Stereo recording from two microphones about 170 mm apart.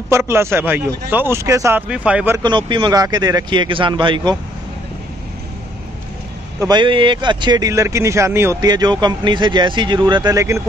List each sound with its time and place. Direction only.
0.1 s a man's voice: 15° right (ahead or behind)
2.3 s speech: 25° right (ahead or behind)
6.6 s speech: 25° right (ahead or behind)